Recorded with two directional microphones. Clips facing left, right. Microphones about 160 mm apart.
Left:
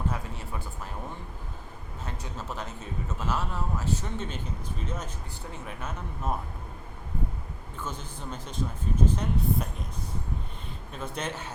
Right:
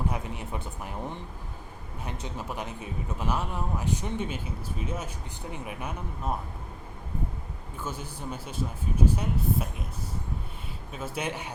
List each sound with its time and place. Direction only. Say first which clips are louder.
0.1 s a man's voice: right 2 dB; 20° right (ahead or behind)
7.8 s a man's voice: right 2 dB; 10° right (ahead or behind)
10.9 s a man's voice: right 2 dB; 5° right (ahead or behind)